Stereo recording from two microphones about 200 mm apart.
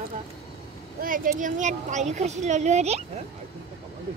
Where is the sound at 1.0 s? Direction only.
45° right (ahead or behind).